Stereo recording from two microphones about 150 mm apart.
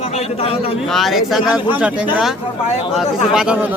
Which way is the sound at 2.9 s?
5° right (ahead or behind).